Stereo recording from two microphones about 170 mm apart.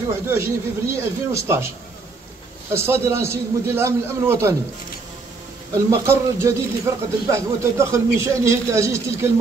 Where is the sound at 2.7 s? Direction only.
15° right (ahead or behind).